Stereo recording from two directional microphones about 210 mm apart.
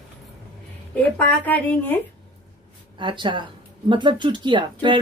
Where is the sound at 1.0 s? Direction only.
10° left (ahead or behind).